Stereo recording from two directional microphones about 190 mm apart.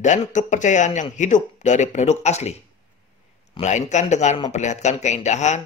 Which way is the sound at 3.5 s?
40° left (ahead or behind).